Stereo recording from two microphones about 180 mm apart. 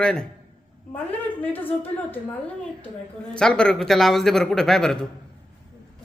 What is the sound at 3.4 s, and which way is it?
A man's voice, 5° left (ahead or behind).